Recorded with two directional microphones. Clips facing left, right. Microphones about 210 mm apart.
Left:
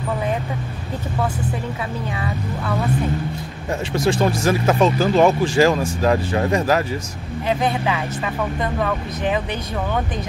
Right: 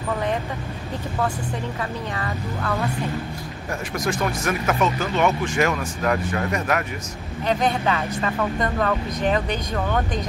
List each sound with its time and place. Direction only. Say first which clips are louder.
2.1 s speech: left 2 dB; 10° left (ahead or behind)
3.9 s speech: left 6 dB; 30° left (ahead or behind)
7.4 s speech: left 1 dB; 10° left (ahead or behind)